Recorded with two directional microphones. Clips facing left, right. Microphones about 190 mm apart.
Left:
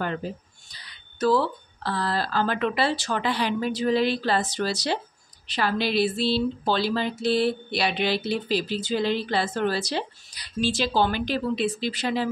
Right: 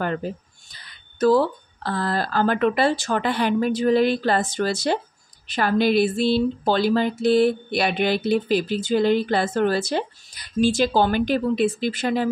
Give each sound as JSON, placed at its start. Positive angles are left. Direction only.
{"t": 0.0, "sound": "speech", "side_deg": -50}